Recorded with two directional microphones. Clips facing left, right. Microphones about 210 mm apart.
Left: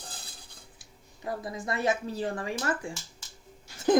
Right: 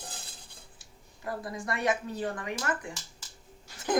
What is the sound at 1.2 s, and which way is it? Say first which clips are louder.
Speech: left 1 dB; 20° left (ahead or behind).